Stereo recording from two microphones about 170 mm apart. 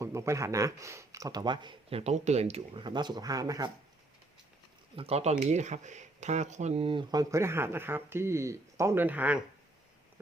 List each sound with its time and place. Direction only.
0.0 s speech: 15° right (ahead or behind)
4.9 s speech: 35° right (ahead or behind); by 9.4 s 10° right (ahead or behind)